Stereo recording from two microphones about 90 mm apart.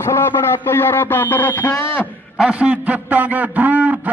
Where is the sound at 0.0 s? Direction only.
25° left (ahead or behind).